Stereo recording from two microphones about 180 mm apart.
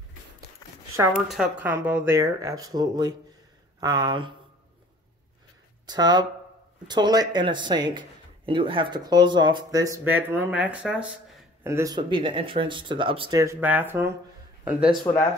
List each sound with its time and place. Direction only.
1.3 s speech: 5° right (ahead or behind); by 4.3 s 25° right (ahead or behind)
5.9 s speech: 20° right (ahead or behind); by 11.1 s 5° right (ahead or behind)
11.6 s speech: 15° right (ahead or behind)
13.4 s speech: 15° right (ahead or behind)